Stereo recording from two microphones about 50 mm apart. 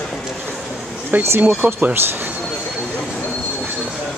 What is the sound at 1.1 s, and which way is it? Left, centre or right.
Speech, right.